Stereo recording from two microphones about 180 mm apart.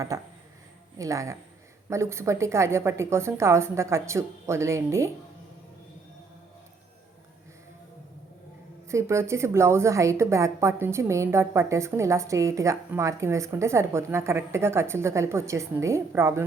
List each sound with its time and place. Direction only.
0.1 s a woman's voice: 20° right (ahead or behind)
8.9 s a woman's voice: 15° right (ahead or behind)